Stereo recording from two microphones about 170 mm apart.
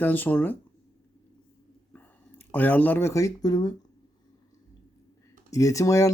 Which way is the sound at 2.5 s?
10° left (ahead or behind).